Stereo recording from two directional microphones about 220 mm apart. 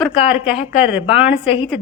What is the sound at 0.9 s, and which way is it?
Speech, 5° right (ahead or behind).